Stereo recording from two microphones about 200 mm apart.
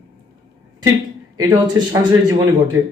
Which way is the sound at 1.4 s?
20° right (ahead or behind).